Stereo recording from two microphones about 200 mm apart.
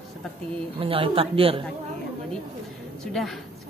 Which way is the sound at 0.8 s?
30° right (ahead or behind).